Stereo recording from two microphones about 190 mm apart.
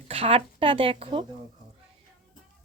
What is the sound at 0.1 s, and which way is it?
A woman's voice, 30° right (ahead or behind).